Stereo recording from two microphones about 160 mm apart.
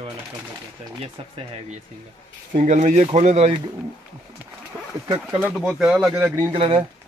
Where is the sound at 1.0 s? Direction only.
35° right (ahead or behind).